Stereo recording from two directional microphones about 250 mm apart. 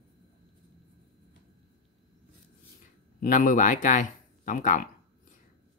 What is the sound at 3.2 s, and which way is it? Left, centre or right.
Speech, left.